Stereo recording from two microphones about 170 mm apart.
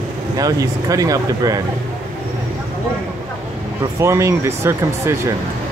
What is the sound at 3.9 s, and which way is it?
Speech, 15° right (ahead or behind).